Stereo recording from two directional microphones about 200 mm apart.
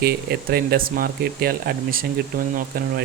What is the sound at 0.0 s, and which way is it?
Speech, 50° right (ahead or behind).